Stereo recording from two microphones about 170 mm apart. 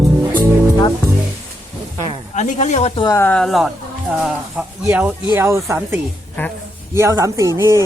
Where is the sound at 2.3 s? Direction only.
45° left (ahead or behind).